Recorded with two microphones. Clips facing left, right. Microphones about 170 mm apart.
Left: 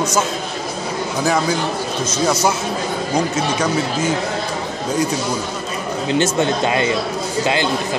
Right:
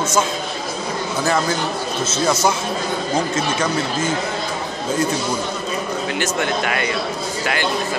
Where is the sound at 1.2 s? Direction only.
10° left (ahead or behind).